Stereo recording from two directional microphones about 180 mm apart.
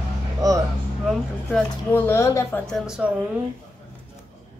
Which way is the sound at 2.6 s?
Centre (ahead or behind).